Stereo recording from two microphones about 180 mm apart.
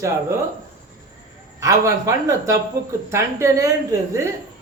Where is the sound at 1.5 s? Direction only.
15° right (ahead or behind).